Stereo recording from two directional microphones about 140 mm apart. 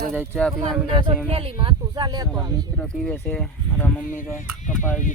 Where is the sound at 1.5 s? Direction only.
30° right (ahead or behind).